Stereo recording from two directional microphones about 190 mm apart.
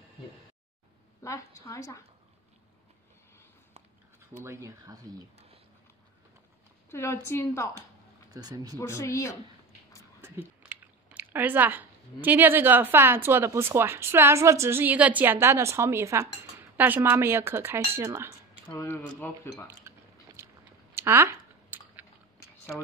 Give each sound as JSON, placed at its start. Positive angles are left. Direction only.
{"t": 1.2, "sound": "speech", "side_deg": 15}
{"t": 4.5, "sound": "speech", "side_deg": -15}
{"t": 6.9, "sound": "speech", "side_deg": 15}
{"t": 8.3, "sound": "speech", "side_deg": -20}
{"t": 8.7, "sound": "speech", "side_deg": 15}
{"t": 10.2, "sound": "speech", "side_deg": -10}
{"t": 18.7, "sound": "speech", "side_deg": 15}
{"t": 19.9, "sound": "a sound", "side_deg": -15}
{"t": 20.9, "sound": "chewing", "side_deg": -15}